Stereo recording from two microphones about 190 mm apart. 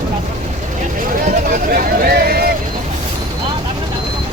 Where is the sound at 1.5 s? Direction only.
50° right (ahead or behind).